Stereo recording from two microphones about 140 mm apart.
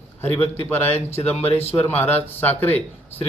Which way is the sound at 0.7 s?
15° left (ahead or behind).